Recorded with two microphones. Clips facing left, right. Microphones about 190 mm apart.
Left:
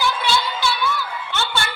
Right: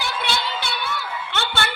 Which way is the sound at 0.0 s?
60° right (ahead or behind).